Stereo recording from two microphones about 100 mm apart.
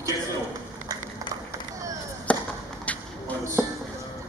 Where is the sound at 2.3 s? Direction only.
15° left (ahead or behind).